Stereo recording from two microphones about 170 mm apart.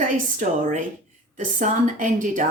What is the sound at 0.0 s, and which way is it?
A woman's voice, 45° right (ahead or behind).